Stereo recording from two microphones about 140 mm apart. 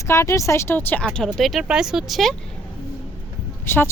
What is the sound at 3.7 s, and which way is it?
Speech, 15° left (ahead or behind).